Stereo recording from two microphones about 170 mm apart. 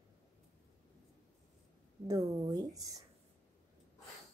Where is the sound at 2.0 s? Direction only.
20° right (ahead or behind).